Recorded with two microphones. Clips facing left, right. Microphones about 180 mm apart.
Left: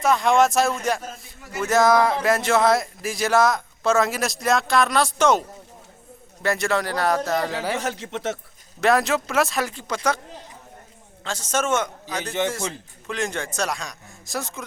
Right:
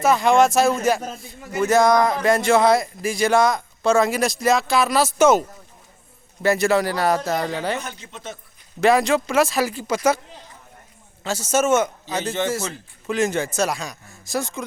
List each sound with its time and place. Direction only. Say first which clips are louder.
0.0 s speech: right 2 dB; centre (ahead or behind)
6.4 s speech: right 5 dB; centre (ahead or behind)
7.8 s speech: left 6 dB; 80° left
8.8 s speech: right 3 dB; centre (ahead or behind)
11.2 s a man's voice: right 5 dB; 10° right (ahead or behind)